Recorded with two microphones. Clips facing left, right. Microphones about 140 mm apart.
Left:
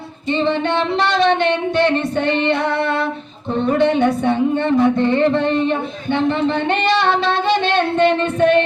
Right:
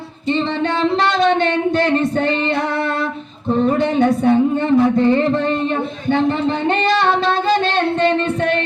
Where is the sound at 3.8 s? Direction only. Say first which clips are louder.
Even; 40° right (ahead or behind).